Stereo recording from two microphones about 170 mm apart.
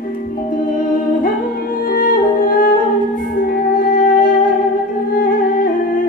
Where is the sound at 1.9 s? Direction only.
55° left (ahead or behind).